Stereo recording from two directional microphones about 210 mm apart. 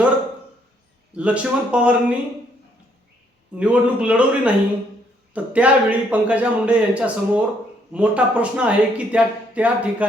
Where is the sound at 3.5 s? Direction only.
5° right (ahead or behind).